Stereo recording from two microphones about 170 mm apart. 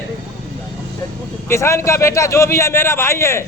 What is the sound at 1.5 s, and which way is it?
A man's voice, 15° left (ahead or behind).